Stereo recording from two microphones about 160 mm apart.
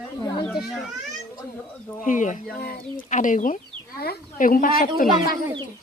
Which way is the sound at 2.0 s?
55° left (ahead or behind).